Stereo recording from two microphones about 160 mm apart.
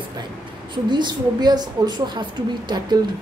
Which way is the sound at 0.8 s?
25° right (ahead or behind).